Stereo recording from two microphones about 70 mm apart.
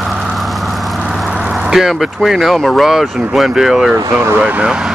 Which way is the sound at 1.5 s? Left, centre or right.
Centre.